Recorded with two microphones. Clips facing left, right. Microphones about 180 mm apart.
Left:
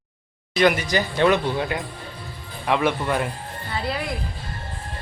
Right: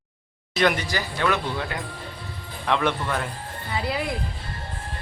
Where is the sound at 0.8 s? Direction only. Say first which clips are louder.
Left 6 dB; 20° left (ahead or behind).